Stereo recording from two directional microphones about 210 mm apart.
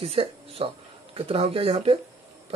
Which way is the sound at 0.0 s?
25° right (ahead or behind).